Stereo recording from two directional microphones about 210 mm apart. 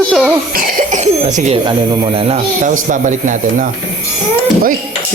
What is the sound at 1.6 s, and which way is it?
Speech, 20° right (ahead or behind).